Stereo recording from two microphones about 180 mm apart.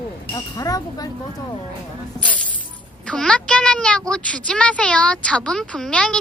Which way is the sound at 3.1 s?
5° left (ahead or behind).